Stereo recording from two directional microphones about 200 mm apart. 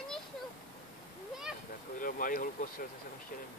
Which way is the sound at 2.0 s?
45° left (ahead or behind).